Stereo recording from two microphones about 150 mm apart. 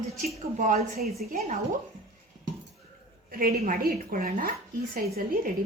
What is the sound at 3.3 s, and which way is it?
A woman's voice, 75° right (ahead or behind).